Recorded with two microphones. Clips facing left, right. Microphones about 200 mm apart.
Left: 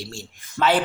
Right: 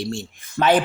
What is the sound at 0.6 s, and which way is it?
Speech, 30° right (ahead or behind).